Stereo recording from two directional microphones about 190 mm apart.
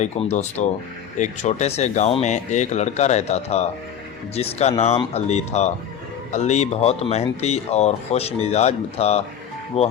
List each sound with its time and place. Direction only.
0.0 s speech: 35° left (ahead or behind)